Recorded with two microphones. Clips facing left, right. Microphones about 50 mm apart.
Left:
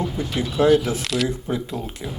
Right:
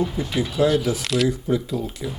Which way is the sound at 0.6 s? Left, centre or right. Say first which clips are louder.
Left 3 dB; left.